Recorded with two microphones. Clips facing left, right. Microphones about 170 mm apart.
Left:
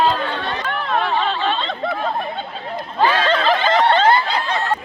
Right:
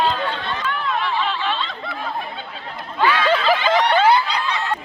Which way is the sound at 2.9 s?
40° left (ahead or behind).